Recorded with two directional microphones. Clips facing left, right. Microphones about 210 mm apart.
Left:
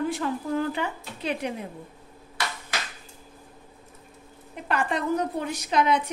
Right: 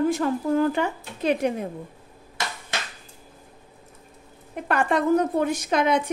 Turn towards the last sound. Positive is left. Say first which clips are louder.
# right 2 dB
turn(degrees=-50)  # may be behind; listen again after turning